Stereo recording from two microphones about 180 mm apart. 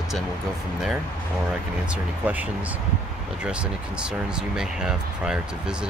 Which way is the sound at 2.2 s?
10° right (ahead or behind).